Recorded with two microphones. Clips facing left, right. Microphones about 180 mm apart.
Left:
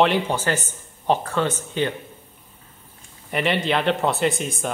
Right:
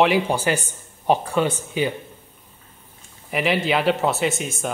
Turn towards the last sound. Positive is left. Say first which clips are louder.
# left 1 dB
turn(degrees=0)  # may be behind; listen again after turning